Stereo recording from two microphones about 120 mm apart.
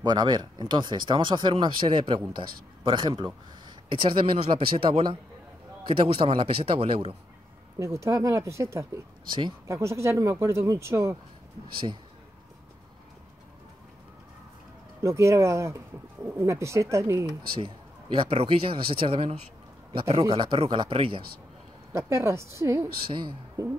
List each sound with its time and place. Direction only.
0.0 s a man's voice: 35° right (ahead or behind); by 7.2 s 55° right (ahead or behind)
7.8 s speech: 25° right (ahead or behind)
15.0 s speech: 25° right (ahead or behind)
17.6 s speech: 45° right (ahead or behind)
21.9 s speech: 25° right (ahead or behind)